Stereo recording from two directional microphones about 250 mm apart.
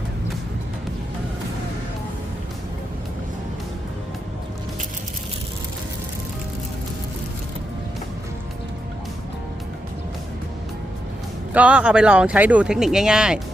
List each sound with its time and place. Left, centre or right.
11.5 s speech: centre